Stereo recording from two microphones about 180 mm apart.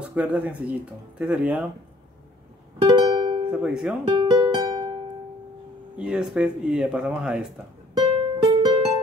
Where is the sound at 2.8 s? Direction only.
25° right (ahead or behind).